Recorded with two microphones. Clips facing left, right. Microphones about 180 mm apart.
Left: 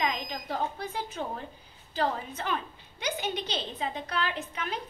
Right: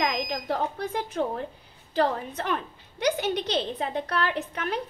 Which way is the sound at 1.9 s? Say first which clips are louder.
Right 5 dB; 70° right (ahead or behind).